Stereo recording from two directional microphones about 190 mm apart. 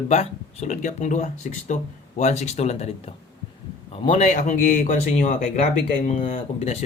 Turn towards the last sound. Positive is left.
turn(degrees=35)  # may be behind; listen again after turning